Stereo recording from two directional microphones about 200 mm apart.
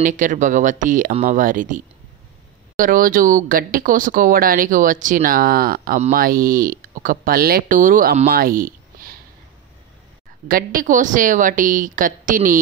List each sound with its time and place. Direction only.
0.0 s a woman's voice: 40° right (ahead or behind)
8.3 s a sound: 45° right (ahead or behind)
10.5 s a woman's voice: 45° right (ahead or behind)